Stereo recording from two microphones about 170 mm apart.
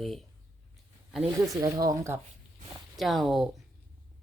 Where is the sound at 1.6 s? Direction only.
20° right (ahead or behind).